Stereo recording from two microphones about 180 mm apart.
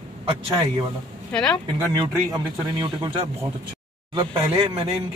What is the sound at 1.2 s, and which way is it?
Speech, 5° left (ahead or behind).